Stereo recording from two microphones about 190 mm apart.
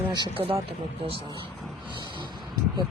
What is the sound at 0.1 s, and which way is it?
Speech, 25° right (ahead or behind).